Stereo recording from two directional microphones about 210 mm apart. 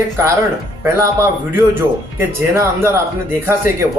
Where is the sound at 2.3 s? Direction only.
10° right (ahead or behind).